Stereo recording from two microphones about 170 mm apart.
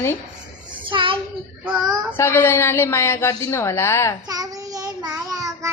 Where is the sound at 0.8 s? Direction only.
30° right (ahead or behind).